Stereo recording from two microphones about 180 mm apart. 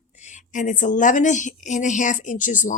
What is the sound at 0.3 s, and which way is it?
A woman's voice, 45° left (ahead or behind).